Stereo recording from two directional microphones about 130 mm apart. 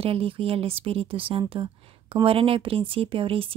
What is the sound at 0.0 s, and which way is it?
Speech, 45° right (ahead or behind).